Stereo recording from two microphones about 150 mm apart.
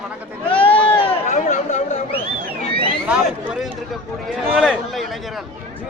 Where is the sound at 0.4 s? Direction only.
35° left (ahead or behind).